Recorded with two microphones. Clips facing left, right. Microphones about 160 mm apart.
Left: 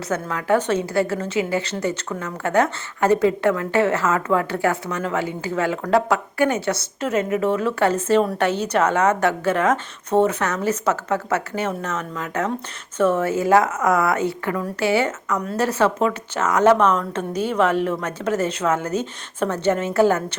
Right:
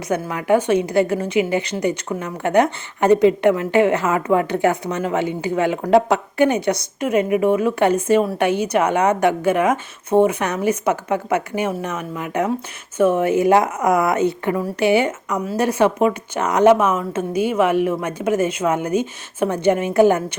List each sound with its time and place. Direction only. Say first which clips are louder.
0.1 s a woman's voice: right 3 dB; 15° right (ahead or behind)
16.7 s a woman's voice: even; 5° right (ahead or behind)